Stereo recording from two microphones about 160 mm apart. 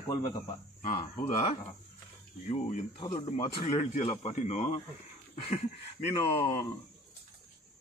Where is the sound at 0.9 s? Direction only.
35° left (ahead or behind).